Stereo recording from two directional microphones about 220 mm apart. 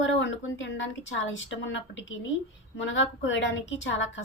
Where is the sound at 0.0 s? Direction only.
60° left (ahead or behind).